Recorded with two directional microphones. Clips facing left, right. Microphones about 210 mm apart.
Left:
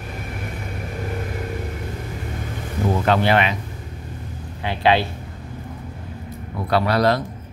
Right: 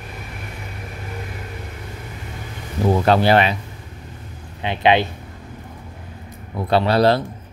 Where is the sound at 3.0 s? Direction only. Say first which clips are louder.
Right 2 dB; 35° right (ahead or behind).